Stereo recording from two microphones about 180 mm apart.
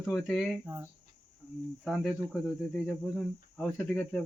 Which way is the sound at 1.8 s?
Centre (ahead or behind).